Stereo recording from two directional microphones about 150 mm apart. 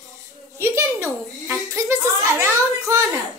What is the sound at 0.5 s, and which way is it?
A child's voice, 15° right (ahead or behind).